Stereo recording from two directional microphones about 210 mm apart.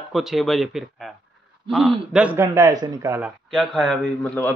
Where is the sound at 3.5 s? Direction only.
Centre (ahead or behind).